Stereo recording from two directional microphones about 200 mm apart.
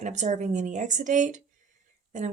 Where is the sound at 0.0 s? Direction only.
35° right (ahead or behind).